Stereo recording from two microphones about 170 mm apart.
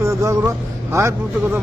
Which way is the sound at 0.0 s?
20° right (ahead or behind).